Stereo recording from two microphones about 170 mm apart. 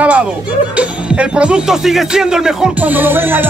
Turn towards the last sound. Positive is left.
turn(degrees=-10)  # may be behind; listen again after turning